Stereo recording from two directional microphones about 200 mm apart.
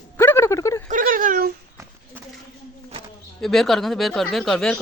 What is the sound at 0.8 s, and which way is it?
Whimper, 40° right (ahead or behind).